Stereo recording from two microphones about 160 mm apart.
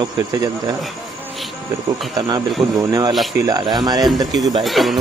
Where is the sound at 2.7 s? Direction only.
20° right (ahead or behind).